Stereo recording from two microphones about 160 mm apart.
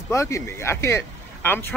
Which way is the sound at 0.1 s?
20° left (ahead or behind).